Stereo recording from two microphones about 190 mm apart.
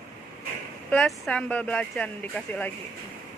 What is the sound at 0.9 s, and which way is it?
Speech, 5° left (ahead or behind).